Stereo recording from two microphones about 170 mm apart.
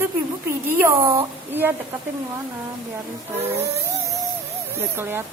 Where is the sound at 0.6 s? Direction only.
15° right (ahead or behind).